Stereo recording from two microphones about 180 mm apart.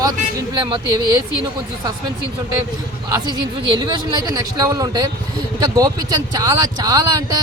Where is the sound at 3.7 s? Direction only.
25° right (ahead or behind).